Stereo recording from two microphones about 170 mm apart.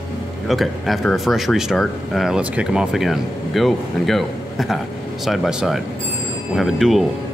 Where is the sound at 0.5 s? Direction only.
Centre (ahead or behind).